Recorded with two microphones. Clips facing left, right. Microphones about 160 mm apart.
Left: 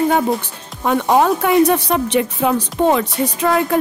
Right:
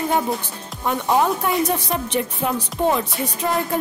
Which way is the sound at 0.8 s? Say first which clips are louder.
Left 5 dB; 70° left (ahead or behind).